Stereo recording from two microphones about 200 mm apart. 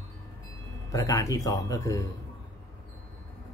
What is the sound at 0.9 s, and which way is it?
Speech, 15° left (ahead or behind).